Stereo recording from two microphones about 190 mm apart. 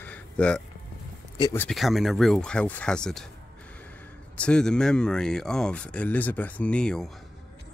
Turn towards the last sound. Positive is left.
turn(degrees=5)  # may be behind; listen again after turning